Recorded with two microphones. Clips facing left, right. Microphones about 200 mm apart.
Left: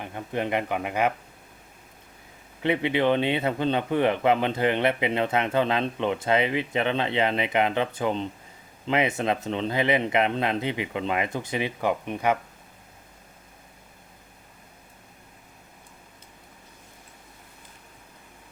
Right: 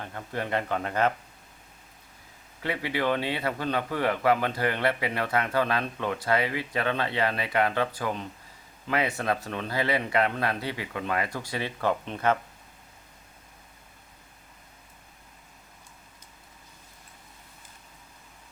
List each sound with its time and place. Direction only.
0.0 s speech: 15° left (ahead or behind)
2.6 s a man's voice: 20° left (ahead or behind)